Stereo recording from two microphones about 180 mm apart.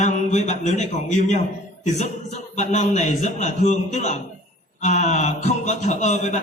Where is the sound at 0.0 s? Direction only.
40° left (ahead or behind).